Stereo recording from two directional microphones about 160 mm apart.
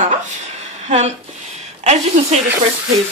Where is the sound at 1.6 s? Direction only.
45° right (ahead or behind).